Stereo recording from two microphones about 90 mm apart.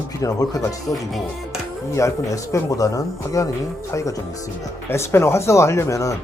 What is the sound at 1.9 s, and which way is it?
Speech, 35° left (ahead or behind).